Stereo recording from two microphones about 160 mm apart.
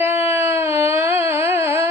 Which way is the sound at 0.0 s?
15° right (ahead or behind).